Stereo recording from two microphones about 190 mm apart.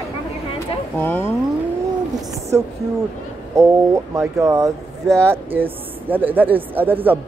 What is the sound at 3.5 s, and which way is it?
Speech, 15° right (ahead or behind).